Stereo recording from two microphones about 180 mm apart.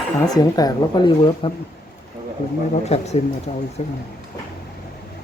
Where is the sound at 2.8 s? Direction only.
35° left (ahead or behind).